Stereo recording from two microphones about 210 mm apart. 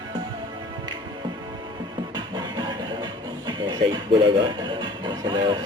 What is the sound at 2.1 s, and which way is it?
Music, 20° right (ahead or behind).